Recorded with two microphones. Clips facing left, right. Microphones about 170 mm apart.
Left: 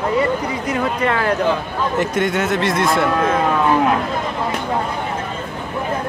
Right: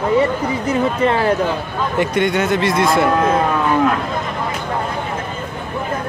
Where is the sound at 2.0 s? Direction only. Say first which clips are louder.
Right 3 dB; centre (ahead or behind).